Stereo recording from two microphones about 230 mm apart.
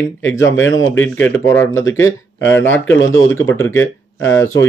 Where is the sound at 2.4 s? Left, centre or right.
Left.